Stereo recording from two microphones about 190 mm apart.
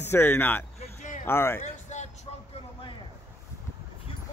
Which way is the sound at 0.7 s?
40° left (ahead or behind).